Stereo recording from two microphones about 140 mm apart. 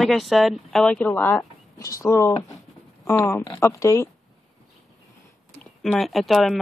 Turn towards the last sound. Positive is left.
turn(degrees=0)  # may be behind; listen again after turning